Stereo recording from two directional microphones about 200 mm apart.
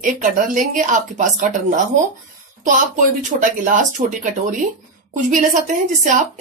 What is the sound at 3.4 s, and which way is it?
A woman's voice, 40° right (ahead or behind).